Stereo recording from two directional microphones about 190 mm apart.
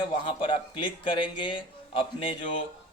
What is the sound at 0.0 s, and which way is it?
A man's voice, 25° left (ahead or behind).